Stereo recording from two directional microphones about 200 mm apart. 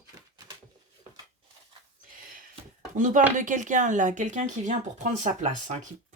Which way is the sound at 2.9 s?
40° right (ahead or behind).